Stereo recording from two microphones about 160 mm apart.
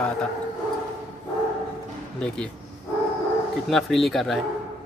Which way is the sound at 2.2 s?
5° left (ahead or behind).